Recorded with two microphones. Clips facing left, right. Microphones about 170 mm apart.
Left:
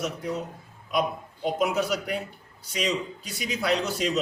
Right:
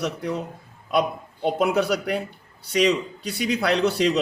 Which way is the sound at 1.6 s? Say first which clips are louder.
Right 4 dB; 65° right (ahead or behind).